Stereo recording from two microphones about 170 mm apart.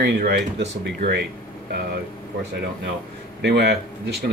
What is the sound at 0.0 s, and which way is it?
Speech, 80° right.